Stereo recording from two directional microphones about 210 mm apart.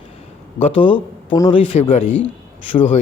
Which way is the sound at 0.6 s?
25° left (ahead or behind).